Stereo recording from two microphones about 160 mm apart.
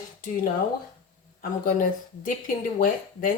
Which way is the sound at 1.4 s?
60° left (ahead or behind).